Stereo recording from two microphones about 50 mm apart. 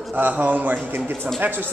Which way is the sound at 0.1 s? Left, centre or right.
Right.